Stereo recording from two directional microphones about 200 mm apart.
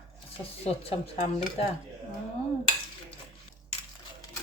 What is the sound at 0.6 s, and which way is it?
Speech, 30° left (ahead or behind).